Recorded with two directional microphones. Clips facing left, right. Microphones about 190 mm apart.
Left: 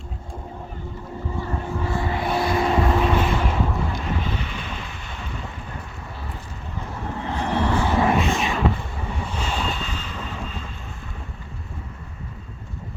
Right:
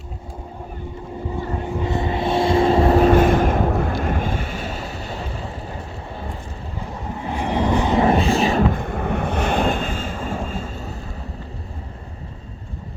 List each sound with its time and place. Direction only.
1.5 s vehicle: 15° right (ahead or behind); by 5.8 s 35° right (ahead or behind)
7.2 s vehicle: 15° right (ahead or behind)
8.0 s a sound: 35° right (ahead or behind)
8.7 s vehicle: 55° right (ahead or behind)